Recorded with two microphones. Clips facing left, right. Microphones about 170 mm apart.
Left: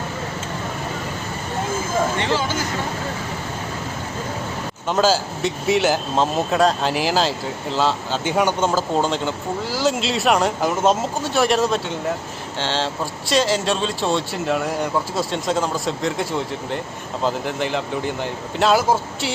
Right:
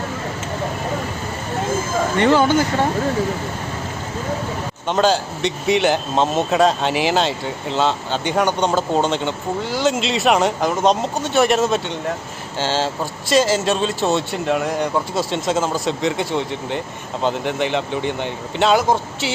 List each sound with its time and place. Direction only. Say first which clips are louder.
2.1 s speech: right 7 dB; 55° right (ahead or behind)
4.9 s speech: right 1 dB; 5° left (ahead or behind)